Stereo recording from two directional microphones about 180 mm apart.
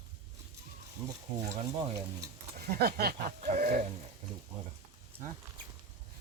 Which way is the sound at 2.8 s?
60° right (ahead or behind).